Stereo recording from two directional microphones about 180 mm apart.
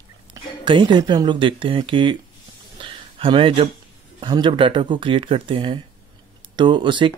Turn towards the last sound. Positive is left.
turn(degrees=-25)  # may be behind; listen again after turning